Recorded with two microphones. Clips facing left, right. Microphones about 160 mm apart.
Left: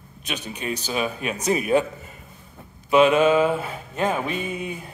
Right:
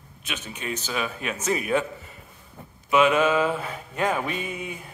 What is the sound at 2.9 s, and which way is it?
Speech, 30° left (ahead or behind).